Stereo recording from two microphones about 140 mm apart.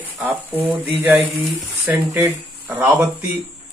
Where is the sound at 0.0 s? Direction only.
10° right (ahead or behind).